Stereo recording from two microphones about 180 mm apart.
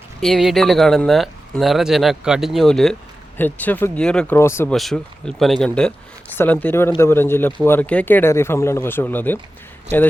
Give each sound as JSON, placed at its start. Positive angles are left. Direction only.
{"t": 0.2, "sound": "speech", "side_deg": 0}
{"t": 4.7, "sound": "speech", "side_deg": 0}